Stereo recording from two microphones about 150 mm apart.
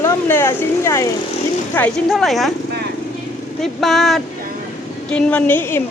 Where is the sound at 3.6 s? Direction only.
Centre (ahead or behind).